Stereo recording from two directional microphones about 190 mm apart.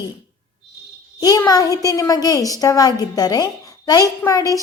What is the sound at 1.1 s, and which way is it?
A woman's voice, 20° left (ahead or behind).